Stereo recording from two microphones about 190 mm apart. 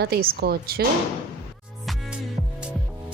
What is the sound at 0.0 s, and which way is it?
Speech, 55° right (ahead or behind).